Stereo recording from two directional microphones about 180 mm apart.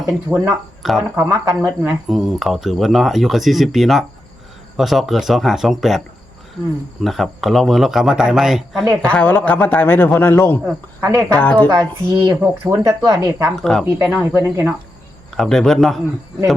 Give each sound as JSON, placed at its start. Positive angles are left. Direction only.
{"t": 0.3, "sound": "speech", "side_deg": -5}
{"t": 2.0, "sound": "speech", "side_deg": 0}
{"t": 7.0, "sound": "speech", "side_deg": 0}
{"t": 9.1, "sound": "a man's voice", "side_deg": 10}
{"t": 11.0, "sound": "speech", "side_deg": -15}
{"t": 11.3, "sound": "a man's voice", "side_deg": 10}
{"t": 11.7, "sound": "speech", "side_deg": -20}
{"t": 13.6, "sound": "speech", "side_deg": 0}
{"t": 14.1, "sound": "speech", "side_deg": -10}
{"t": 15.4, "sound": "speech", "side_deg": 0}